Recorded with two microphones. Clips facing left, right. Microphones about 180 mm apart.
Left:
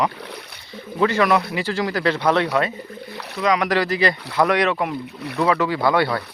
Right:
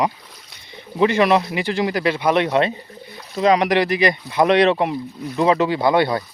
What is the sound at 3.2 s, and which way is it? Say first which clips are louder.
Rowboat: right 5 dB; 70° left (ahead or behind).